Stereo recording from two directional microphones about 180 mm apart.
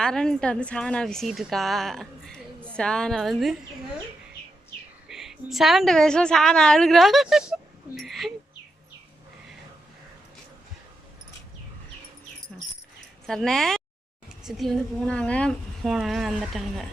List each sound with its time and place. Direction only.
0.0 s a woman's voice: 5° left (ahead or behind)
5.0 s a woman's voice: centre (ahead or behind)
13.2 s a woman's voice: 5° left (ahead or behind)